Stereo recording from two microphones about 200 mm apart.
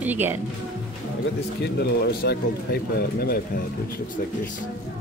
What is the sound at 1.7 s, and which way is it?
Speech, 55° left (ahead or behind).